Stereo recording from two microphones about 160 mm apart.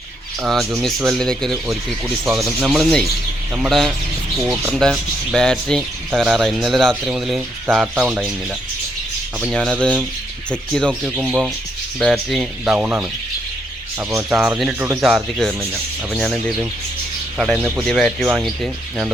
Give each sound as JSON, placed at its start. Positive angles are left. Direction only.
{"t": 0.4, "sound": "speech", "side_deg": 0}
{"t": 9.5, "sound": "speech", "side_deg": 5}
{"t": 12.7, "sound": "speech", "side_deg": -10}
{"t": 14.1, "sound": "speech", "side_deg": -15}
{"t": 14.3, "sound": "speech", "side_deg": -5}